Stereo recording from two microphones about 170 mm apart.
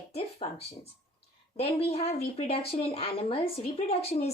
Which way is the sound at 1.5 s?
35° left (ahead or behind).